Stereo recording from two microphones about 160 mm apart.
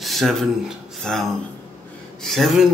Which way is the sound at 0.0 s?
Centre (ahead or behind).